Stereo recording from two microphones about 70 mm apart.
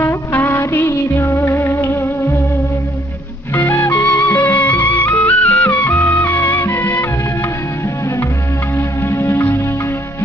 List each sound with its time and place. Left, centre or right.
0.0 s music of bollywood: left
3.5 s music: left
8.7 s music: left